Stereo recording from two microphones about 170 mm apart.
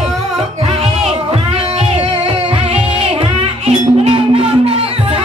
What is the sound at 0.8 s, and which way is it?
Music, 40° right (ahead or behind).